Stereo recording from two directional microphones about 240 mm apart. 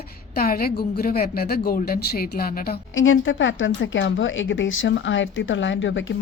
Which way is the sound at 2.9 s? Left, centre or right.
Left.